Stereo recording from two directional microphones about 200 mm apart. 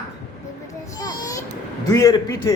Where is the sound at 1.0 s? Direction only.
20° left (ahead or behind).